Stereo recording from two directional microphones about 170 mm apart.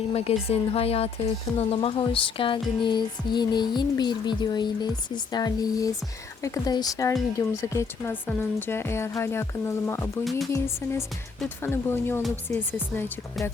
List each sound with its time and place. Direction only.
0.1 s speech: 35° left (ahead or behind)
1.5 s music: 35° left (ahead or behind)
7.6 s speech: 15° left (ahead or behind)
10.2 s music: centre (ahead or behind)
11.3 s speech: 10° left (ahead or behind)